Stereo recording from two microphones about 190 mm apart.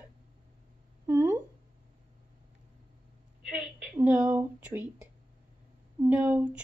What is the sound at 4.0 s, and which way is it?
Speech, 5° right (ahead or behind).